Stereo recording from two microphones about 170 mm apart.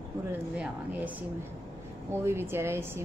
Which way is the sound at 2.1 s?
15° right (ahead or behind).